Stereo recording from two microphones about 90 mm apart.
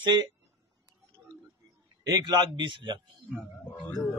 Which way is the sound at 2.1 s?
60° right (ahead or behind).